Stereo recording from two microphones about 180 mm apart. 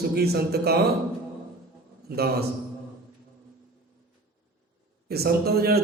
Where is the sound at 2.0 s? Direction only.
60° right (ahead or behind).